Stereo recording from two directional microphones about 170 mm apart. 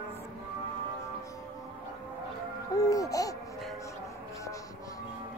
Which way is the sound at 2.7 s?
20° left (ahead or behind).